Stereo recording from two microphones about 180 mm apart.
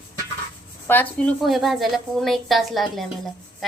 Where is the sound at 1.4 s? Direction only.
Centre (ahead or behind).